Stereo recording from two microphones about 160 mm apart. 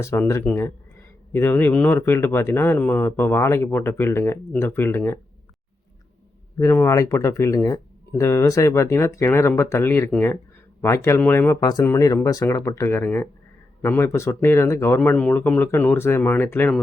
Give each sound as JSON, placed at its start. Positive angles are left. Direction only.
{"t": 0.0, "sound": "speech", "side_deg": 15}
{"t": 6.6, "sound": "speech", "side_deg": 15}